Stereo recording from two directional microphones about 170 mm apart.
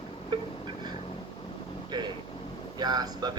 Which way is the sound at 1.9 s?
25° right (ahead or behind).